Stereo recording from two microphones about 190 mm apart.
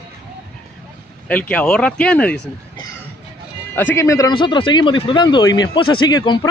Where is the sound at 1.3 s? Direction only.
5° left (ahead or behind).